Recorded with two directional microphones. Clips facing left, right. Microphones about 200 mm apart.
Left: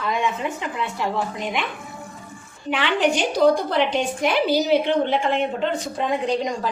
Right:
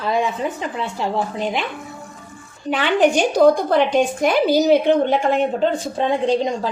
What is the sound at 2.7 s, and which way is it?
A woman's voice, 45° right (ahead or behind).